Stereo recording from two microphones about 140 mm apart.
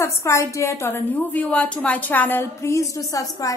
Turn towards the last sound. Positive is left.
turn(degrees=25)  # may be behind; listen again after turning